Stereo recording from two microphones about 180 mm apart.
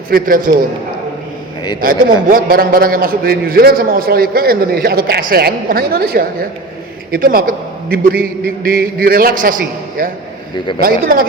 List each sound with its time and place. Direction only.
0.1 s speech: 50° right (ahead or behind)
1.8 s a man's voice: 50° right (ahead or behind)